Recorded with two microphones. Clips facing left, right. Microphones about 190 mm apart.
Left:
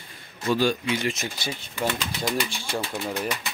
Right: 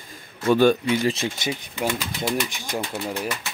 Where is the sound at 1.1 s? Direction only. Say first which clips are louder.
Right 5 dB; 30° right (ahead or behind).